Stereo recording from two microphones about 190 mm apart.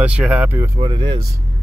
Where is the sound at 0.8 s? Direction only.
25° right (ahead or behind).